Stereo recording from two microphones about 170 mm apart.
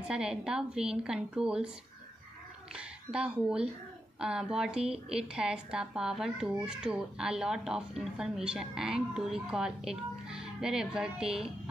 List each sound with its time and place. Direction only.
0.1 s speech: 5° right (ahead or behind)
2.7 s speech: 5° right (ahead or behind)